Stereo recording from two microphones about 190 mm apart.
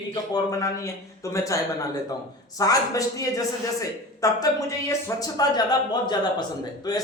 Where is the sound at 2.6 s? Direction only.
20° left (ahead or behind).